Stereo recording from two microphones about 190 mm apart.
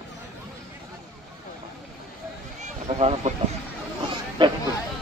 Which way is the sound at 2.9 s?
35° right (ahead or behind).